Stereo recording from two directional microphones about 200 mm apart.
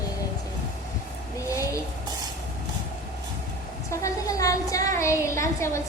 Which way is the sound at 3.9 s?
15° left (ahead or behind).